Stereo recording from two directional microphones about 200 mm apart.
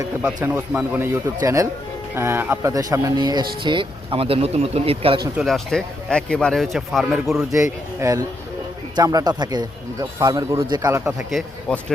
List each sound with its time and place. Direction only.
0.0 s speech: 5° right (ahead or behind); by 5.3 s 25° right (ahead or behind)
5.4 s speech: centre (ahead or behind)
7.9 s speech: 15° right (ahead or behind)
11.2 s speech: centre (ahead or behind)